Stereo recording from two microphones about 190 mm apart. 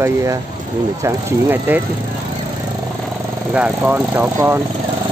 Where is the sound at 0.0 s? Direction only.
15° right (ahead or behind).